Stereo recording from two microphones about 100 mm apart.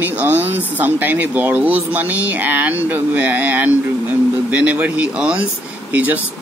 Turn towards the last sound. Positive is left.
turn(degrees=-15)  # may be behind; listen again after turning